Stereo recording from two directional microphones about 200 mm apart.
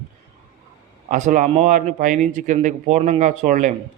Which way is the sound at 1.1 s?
40° right (ahead or behind).